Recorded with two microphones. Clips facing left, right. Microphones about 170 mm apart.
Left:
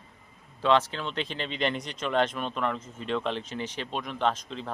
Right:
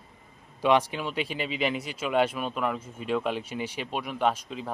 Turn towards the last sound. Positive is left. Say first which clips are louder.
# right 1 dB
turn(degrees=-10)  # may be behind; listen again after turning